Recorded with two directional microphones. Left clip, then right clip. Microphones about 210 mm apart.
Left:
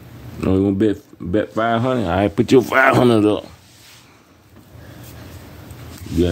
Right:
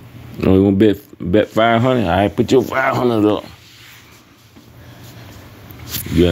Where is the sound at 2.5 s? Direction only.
45° left (ahead or behind).